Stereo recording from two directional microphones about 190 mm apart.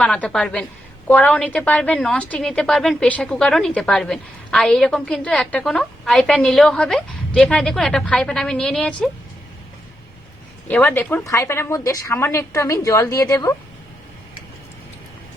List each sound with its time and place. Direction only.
0.0 s a woman's voice: 5° left (ahead or behind)
10.7 s a woman's voice: 10° left (ahead or behind)